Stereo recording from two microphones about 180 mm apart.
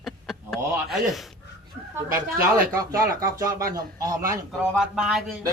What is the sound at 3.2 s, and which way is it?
Speech, 20° right (ahead or behind).